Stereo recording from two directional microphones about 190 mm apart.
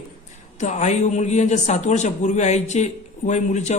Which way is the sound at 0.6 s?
40° left (ahead or behind).